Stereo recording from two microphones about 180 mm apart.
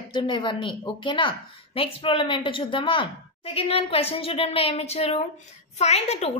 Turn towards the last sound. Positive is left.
turn(degrees=35)  # may be behind; listen again after turning